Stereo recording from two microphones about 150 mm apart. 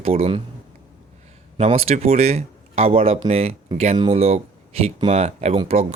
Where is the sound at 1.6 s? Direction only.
45° right (ahead or behind).